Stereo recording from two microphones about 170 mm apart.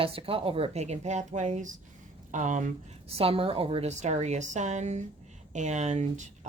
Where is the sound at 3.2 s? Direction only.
35° right (ahead or behind).